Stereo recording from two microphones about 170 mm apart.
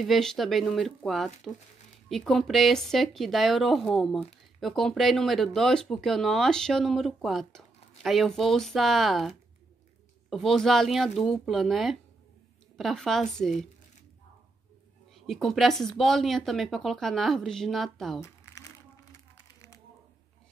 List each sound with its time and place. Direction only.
0.0 s speech: centre (ahead or behind)
15.2 s speech: centre (ahead or behind)
18.2 s a sound: 20° left (ahead or behind)